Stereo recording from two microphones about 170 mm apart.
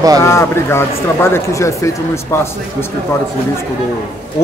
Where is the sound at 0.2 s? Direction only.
15° left (ahead or behind).